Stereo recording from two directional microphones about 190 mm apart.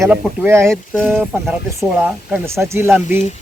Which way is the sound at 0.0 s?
5° right (ahead or behind).